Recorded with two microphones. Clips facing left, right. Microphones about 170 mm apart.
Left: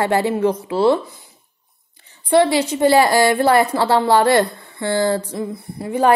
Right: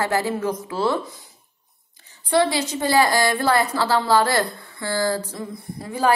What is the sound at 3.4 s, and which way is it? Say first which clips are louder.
A woman's voice: left 5 dB; 25° left (ahead or behind).